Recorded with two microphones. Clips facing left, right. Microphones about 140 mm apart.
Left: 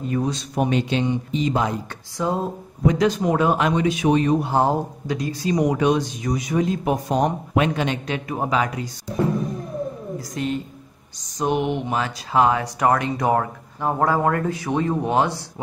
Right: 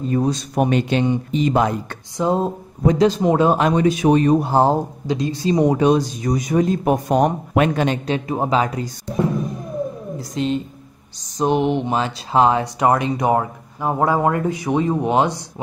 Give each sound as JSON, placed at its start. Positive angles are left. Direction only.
{"t": 0.0, "sound": "a man's voice", "side_deg": -35}
{"t": 0.6, "sound": "speech", "side_deg": -55}
{"t": 2.2, "sound": "a man's voice", "side_deg": -25}
{"t": 8.1, "sound": "speech", "side_deg": -30}
{"t": 10.1, "sound": "a woman's voice", "side_deg": -25}